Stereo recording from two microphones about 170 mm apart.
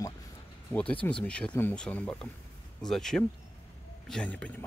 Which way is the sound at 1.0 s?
5° left (ahead or behind).